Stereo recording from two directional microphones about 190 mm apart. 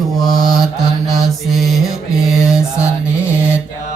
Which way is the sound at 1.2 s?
Centre (ahead or behind).